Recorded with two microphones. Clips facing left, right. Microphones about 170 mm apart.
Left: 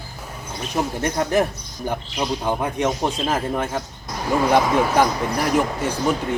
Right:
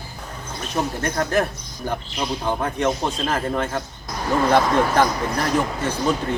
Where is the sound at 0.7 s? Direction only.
15° left (ahead or behind).